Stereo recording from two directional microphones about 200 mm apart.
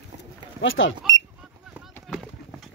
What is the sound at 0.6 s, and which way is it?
Speech, 70° left (ahead or behind).